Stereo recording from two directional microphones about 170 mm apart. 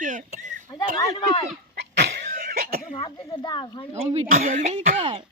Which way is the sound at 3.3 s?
25° left (ahead or behind).